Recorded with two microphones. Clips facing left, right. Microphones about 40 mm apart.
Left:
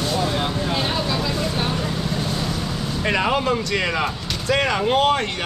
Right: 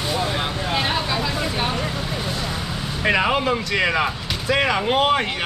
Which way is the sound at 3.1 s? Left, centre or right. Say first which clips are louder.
Right 1 dB; centre.